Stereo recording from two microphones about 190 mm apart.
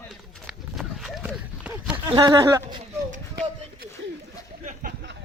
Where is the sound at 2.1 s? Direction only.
20° right (ahead or behind).